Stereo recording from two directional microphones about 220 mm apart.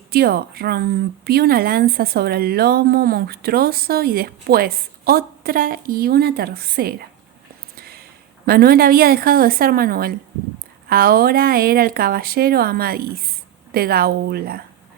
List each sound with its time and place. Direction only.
0.1 s speech: 45° right (ahead or behind)
7.8 s a sound: 45° right (ahead or behind)
8.4 s speech: 45° right (ahead or behind)